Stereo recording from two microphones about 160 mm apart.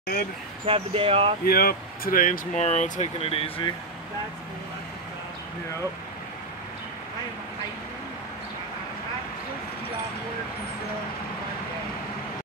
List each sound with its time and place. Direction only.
0.7 s speech: 35° right (ahead or behind)
1.4 s speech: 70° left (ahead or behind); by 3.7 s 35° left (ahead or behind)